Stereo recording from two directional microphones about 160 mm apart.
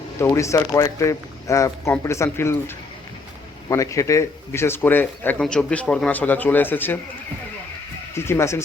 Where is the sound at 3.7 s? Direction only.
20° left (ahead or behind).